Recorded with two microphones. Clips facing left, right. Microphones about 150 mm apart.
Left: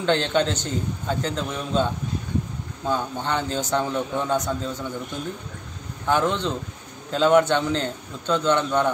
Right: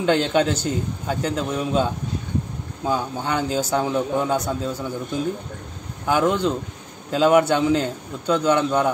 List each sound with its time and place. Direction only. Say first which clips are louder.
0.0 s a man's voice: right 3 dB; 5° right (ahead or behind)
6.0 s a man's voice: right 3 dB; 10° right (ahead or behind)